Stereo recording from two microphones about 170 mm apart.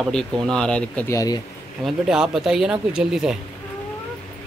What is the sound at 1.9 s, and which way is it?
Speech, 5° right (ahead or behind).